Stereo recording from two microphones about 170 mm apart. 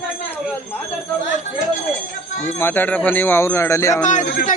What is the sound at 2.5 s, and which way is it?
Speech, 15° left (ahead or behind).